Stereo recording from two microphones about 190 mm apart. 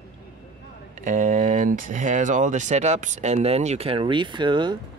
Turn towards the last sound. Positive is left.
turn(degrees=-25)  # may be behind; listen again after turning